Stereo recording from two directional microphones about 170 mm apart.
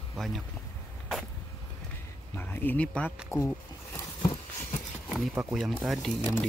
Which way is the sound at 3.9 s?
20° left (ahead or behind).